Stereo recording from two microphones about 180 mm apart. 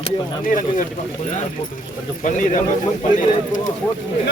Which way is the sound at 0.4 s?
45° left (ahead or behind).